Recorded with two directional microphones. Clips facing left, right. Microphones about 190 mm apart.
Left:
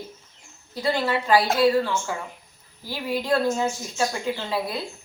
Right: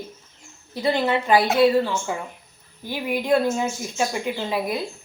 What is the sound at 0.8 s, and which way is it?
A woman's voice, 20° right (ahead or behind).